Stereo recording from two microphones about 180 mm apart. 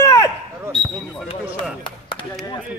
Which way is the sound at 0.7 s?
Centre (ahead or behind).